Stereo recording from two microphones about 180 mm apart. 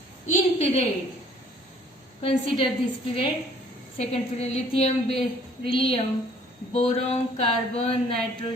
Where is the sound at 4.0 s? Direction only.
35° left (ahead or behind).